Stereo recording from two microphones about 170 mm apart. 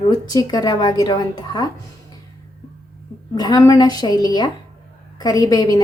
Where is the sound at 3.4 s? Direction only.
20° left (ahead or behind).